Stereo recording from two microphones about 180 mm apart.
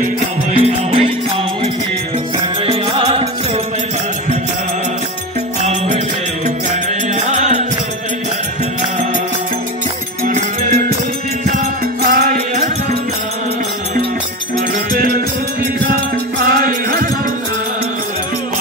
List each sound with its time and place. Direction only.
0.5 s music: 35° right (ahead or behind)
2.6 s music: 30° right (ahead or behind)
5.6 s music: 40° right (ahead or behind)
7.2 s music: 40° right (ahead or behind)
10.2 s music: 50° right (ahead or behind)
14.9 s music: 55° right (ahead or behind)
16.4 s music: 55° right (ahead or behind)